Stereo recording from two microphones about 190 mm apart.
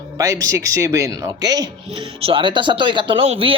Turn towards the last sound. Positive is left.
turn(degrees=-30)  # may be behind; listen again after turning